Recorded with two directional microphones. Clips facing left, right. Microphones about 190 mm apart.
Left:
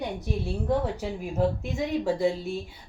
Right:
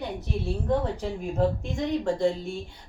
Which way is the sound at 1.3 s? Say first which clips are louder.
Even; 5° left (ahead or behind).